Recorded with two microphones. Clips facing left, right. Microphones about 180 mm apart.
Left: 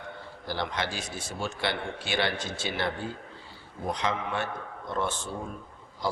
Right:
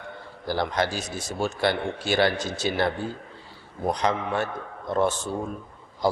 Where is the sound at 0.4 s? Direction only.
45° right (ahead or behind).